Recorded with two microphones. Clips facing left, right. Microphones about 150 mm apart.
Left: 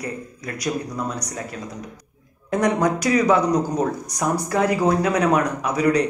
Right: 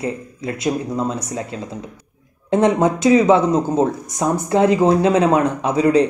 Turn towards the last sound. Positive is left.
turn(degrees=-25)  # may be behind; listen again after turning